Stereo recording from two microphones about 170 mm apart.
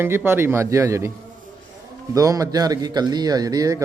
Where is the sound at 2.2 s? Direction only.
20° right (ahead or behind).